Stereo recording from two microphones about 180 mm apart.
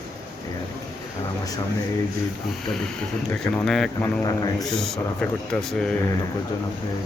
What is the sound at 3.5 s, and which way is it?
Speech, centre (ahead or behind).